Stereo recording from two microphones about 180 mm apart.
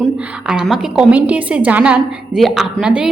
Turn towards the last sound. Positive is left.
turn(degrees=-5)  # may be behind; listen again after turning